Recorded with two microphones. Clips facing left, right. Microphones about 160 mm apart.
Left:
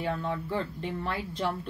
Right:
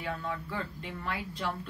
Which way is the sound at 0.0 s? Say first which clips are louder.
Left 5 dB; 30° left (ahead or behind).